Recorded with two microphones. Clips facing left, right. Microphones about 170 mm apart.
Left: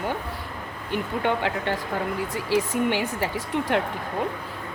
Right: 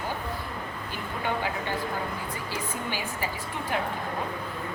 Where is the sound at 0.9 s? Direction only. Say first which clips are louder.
Left 7 dB; 70° left (ahead or behind).